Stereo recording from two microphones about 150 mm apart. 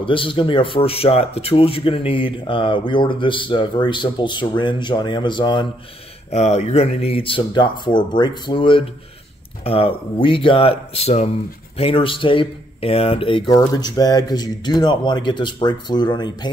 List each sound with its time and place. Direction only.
0.0 s speech: 35° left (ahead or behind)
6.3 s speech: 45° left (ahead or behind); by 16.4 s 30° left (ahead or behind)